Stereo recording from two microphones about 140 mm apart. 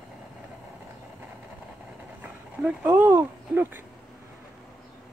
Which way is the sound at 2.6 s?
10° right (ahead or behind).